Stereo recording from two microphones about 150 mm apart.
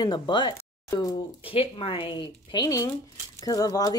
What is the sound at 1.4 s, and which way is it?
Speech, 40° left (ahead or behind).